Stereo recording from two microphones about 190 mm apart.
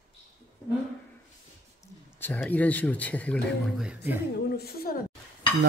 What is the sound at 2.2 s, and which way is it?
Speech, 10° left (ahead or behind).